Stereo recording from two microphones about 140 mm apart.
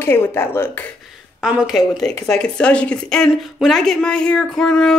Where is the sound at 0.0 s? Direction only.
15° left (ahead or behind).